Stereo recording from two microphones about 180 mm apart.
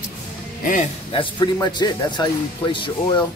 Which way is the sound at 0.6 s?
45° left (ahead or behind).